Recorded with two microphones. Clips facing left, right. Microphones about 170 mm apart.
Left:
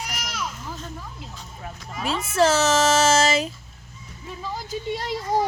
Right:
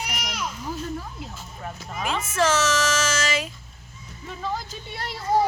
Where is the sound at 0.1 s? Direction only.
15° right (ahead or behind).